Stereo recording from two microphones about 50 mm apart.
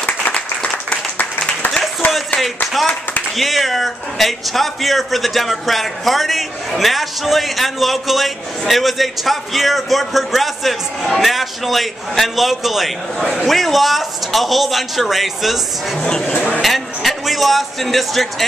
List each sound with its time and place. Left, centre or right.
0.0 s applause: left
2.8 s a man's voice: centre
16.0 s speech: centre
16.6 s a man's voice: centre